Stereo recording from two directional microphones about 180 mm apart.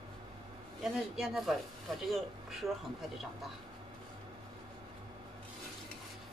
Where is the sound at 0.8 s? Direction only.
Centre (ahead or behind).